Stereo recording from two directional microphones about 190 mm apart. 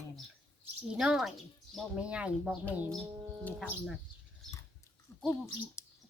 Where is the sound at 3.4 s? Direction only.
10° left (ahead or behind).